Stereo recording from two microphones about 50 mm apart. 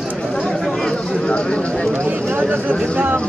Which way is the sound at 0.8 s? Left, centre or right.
Centre.